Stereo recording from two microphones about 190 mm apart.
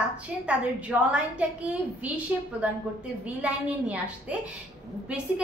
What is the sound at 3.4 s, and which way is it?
A woman's voice, 5° right (ahead or behind).